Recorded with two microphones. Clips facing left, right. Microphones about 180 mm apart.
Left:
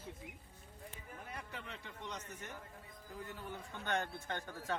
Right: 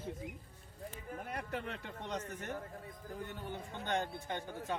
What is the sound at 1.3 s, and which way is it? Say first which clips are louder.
A man's voice: right 8 dB; 60° right (ahead or behind).